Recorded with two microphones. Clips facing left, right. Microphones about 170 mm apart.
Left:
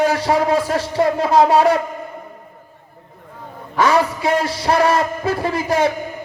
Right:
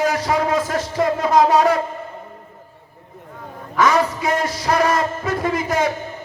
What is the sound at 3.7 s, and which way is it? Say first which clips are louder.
A man's voice: left 1 dB; 30° left (ahead or behind).